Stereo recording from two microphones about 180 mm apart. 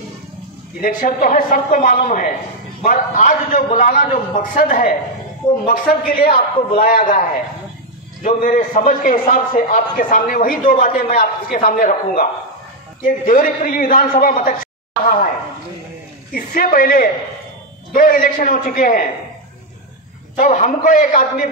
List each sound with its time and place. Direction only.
0.8 s a man's voice: 50° left (ahead or behind)
16.3 s a man's voice: 50° left (ahead or behind)
20.3 s a man's voice: 45° left (ahead or behind)